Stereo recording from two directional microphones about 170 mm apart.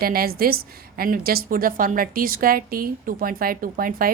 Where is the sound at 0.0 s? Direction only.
60° right (ahead or behind).